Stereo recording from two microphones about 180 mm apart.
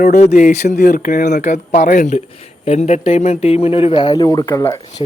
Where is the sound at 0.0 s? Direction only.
40° left (ahead or behind).